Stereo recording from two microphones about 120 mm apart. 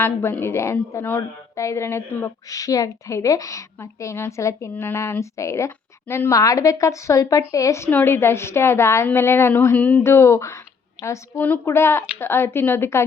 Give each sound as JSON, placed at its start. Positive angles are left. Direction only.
{"t": 0.0, "sound": "a woman's voice", "side_deg": 20}